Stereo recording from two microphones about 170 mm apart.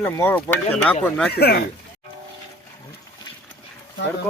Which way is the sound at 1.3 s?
70° left (ahead or behind).